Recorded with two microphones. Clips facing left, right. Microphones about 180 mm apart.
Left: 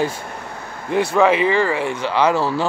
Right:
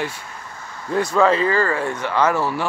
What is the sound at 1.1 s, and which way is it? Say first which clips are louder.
Speech: left 1 dB; 15° left (ahead or behind).